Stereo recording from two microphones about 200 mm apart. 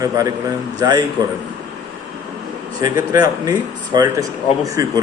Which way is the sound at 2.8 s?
20° right (ahead or behind).